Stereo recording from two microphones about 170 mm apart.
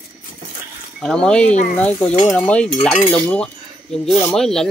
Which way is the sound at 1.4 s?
45° left (ahead or behind).